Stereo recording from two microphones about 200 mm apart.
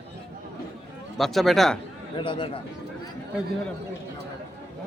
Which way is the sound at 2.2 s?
25° left (ahead or behind).